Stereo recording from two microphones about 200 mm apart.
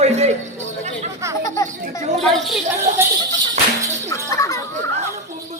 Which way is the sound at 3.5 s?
35° right (ahead or behind).